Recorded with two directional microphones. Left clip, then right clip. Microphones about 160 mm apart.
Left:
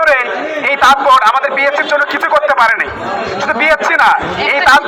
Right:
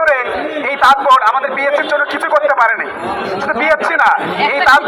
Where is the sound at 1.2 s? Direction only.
10° left (ahead or behind).